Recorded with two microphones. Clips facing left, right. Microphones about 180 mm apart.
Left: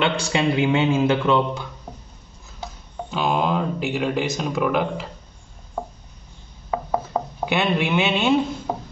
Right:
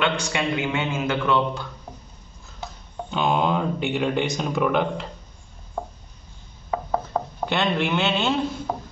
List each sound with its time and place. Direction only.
0.0 s a man's voice: 30° left (ahead or behind)
3.1 s speech: centre (ahead or behind)
6.7 s a sound: 10° left (ahead or behind)